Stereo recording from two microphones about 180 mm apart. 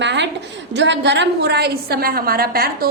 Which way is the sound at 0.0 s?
75° right (ahead or behind).